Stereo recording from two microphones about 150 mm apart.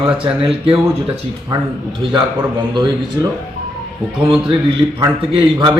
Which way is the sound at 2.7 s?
25° right (ahead or behind).